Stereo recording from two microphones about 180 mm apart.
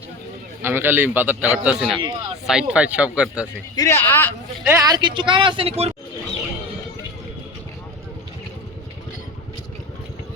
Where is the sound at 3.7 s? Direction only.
15° left (ahead or behind).